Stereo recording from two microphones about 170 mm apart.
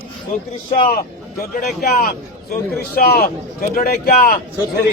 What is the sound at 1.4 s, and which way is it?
Speech, 60° left (ahead or behind).